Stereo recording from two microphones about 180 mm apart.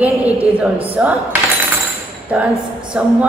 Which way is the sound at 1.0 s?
5° right (ahead or behind).